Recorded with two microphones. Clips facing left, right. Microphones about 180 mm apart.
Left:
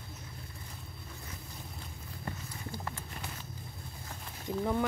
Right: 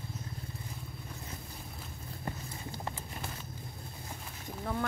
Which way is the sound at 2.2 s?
20° right (ahead or behind).